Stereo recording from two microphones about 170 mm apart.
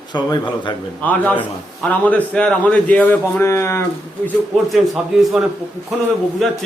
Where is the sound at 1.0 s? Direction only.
10° left (ahead or behind).